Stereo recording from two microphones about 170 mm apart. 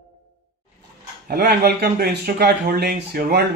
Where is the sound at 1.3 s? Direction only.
70° right (ahead or behind).